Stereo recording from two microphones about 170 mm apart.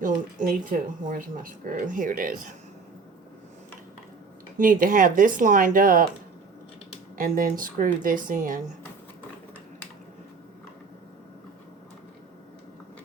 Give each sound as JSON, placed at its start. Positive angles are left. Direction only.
{"t": 0.0, "sound": "speech", "side_deg": -55}
{"t": 4.5, "sound": "speech", "side_deg": -50}
{"t": 7.2, "sound": "speech", "side_deg": -55}